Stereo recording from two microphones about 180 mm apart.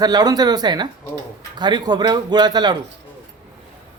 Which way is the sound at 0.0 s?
20° right (ahead or behind).